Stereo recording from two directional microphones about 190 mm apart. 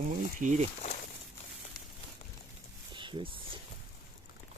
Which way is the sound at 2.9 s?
25° right (ahead or behind).